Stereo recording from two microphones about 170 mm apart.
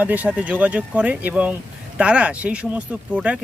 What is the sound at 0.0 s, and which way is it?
Speech, 10° right (ahead or behind).